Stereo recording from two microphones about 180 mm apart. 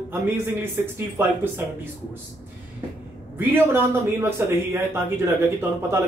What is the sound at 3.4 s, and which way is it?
Speech, 10° right (ahead or behind).